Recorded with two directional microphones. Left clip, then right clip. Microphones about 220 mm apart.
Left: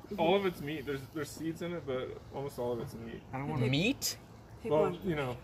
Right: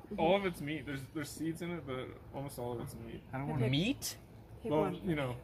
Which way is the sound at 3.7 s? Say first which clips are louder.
Left 6 dB; 25° left (ahead or behind).